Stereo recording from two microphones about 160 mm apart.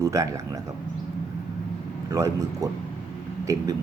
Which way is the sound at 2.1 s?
20° right (ahead or behind).